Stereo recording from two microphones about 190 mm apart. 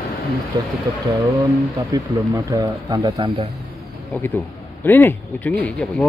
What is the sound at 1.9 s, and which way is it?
Speech, 20° right (ahead or behind).